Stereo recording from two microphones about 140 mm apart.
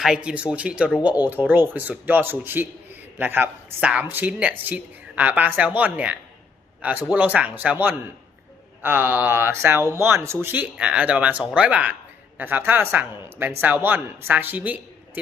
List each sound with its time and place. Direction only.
0.0 s speech: 5° right (ahead or behind)